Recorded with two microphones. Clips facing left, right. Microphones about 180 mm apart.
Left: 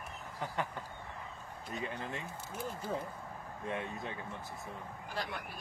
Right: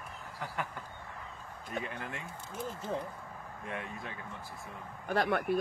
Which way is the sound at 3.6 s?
25° left (ahead or behind).